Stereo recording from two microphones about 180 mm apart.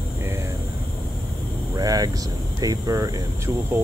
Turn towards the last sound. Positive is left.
turn(degrees=-20)  # may be behind; listen again after turning